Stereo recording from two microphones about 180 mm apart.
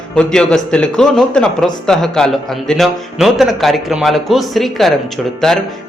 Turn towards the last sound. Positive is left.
turn(degrees=0)  # may be behind; listen again after turning